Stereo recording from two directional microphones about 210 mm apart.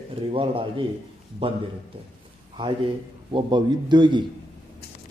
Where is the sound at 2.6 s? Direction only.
20° right (ahead or behind).